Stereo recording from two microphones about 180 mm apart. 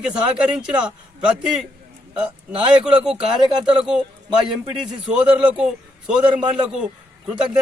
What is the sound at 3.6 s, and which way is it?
Speech, 5° right (ahead or behind).